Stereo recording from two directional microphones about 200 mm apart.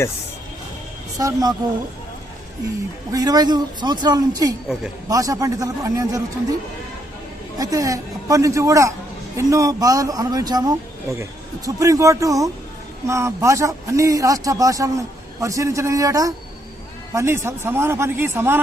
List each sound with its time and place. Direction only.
1.2 s a man's voice: 20° right (ahead or behind)
3.1 s a man's voice: 20° right (ahead or behind)
7.6 s speech: 15° right (ahead or behind)